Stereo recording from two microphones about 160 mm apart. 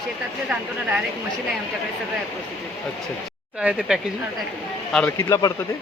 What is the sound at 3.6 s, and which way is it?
Speech, 5° right (ahead or behind).